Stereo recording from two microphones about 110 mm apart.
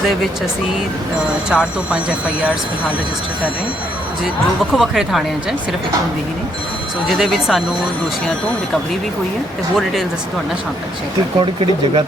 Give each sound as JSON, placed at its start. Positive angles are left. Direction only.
{"t": 1.5, "sound": "speech", "side_deg": -10}
{"t": 4.7, "sound": "speech", "side_deg": 0}
{"t": 7.1, "sound": "speech", "side_deg": 0}
{"t": 11.3, "sound": "speech", "side_deg": -50}